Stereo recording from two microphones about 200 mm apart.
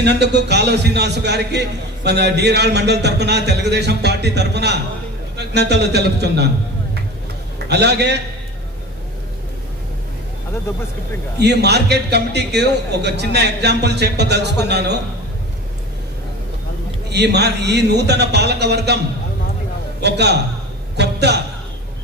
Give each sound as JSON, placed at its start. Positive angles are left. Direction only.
{"t": 0.0, "sound": "a man's voice", "side_deg": -55}
{"t": 7.7, "sound": "a man's voice", "side_deg": -55}
{"t": 11.3, "sound": "a man's voice", "side_deg": -55}
{"t": 17.1, "sound": "a man's voice", "side_deg": -55}
{"t": 20.0, "sound": "a man's voice", "side_deg": -55}